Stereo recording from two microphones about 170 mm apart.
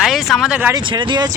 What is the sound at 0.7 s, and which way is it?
Speech, 25° right (ahead or behind).